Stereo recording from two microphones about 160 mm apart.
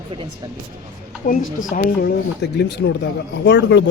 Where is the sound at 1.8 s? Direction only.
85° left.